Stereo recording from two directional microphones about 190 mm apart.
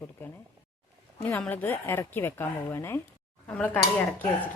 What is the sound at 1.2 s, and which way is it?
Speech, 10° left (ahead or behind).